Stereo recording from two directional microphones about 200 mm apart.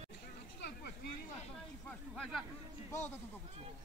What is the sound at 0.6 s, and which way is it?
Vehicle, 60° left (ahead or behind).